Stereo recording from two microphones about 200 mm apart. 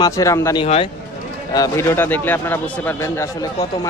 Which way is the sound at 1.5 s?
15° left (ahead or behind).